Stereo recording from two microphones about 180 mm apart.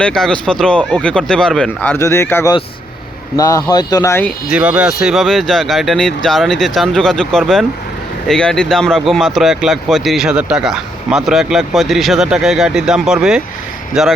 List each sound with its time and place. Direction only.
0.0 s speech: 5° left (ahead or behind)
4.4 s speech: 5° right (ahead or behind)